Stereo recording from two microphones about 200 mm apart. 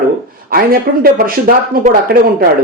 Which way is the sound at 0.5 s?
50° right (ahead or behind).